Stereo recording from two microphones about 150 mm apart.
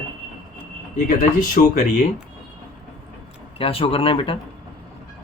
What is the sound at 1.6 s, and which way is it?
Speech, 65° left (ahead or behind).